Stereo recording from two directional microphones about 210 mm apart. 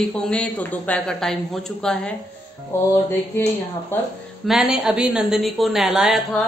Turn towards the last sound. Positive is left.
turn(degrees=0)  # may be behind; listen again after turning